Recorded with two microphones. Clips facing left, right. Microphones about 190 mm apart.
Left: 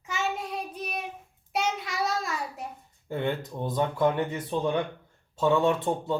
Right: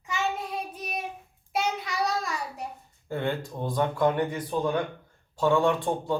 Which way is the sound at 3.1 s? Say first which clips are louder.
Even; 20° left (ahead or behind).